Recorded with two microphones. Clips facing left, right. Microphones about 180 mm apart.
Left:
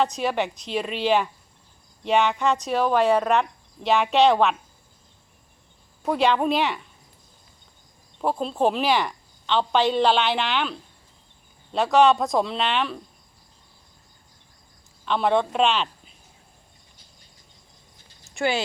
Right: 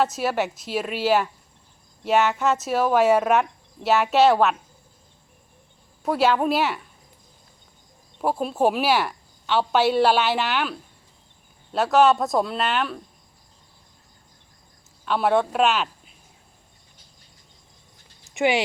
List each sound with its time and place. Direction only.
0.0 s a woman's voice: 5° right (ahead or behind)
6.1 s a woman's voice: 5° right (ahead or behind)
8.2 s a woman's voice: 10° right (ahead or behind)
15.0 s speech: 5° right (ahead or behind)
18.3 s a sound: 15° right (ahead or behind)